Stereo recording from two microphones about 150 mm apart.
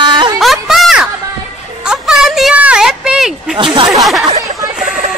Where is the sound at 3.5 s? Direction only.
35° right (ahead or behind).